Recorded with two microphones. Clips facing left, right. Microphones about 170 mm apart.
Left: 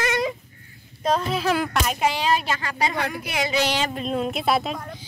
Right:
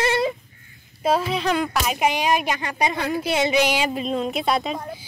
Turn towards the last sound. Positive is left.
turn(degrees=0)  # may be behind; listen again after turning